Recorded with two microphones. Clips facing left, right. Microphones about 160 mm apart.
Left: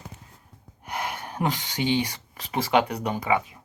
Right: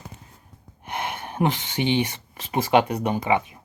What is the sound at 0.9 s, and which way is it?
Speech, 25° right (ahead or behind).